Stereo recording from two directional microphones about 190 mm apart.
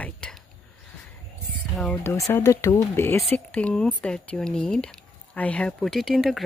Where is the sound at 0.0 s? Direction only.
5° left (ahead or behind).